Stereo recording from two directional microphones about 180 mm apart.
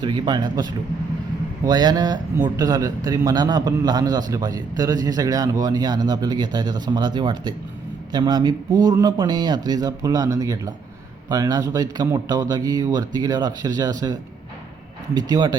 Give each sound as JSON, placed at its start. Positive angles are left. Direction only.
{"t": 0.0, "sound": "speech", "side_deg": -25}